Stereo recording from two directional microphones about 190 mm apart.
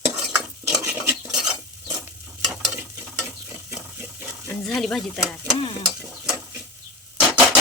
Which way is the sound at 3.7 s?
10° right (ahead or behind).